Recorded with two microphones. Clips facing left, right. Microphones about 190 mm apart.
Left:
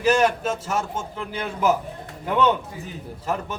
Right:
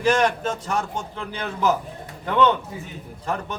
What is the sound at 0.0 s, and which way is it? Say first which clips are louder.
A man's voice: left 1 dB; 5° left (ahead or behind).